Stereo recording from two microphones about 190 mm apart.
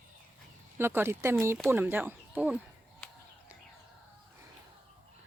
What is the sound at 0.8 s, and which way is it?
Speech, 10° right (ahead or behind).